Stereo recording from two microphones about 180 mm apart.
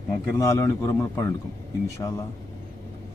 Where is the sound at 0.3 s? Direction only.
15° left (ahead or behind).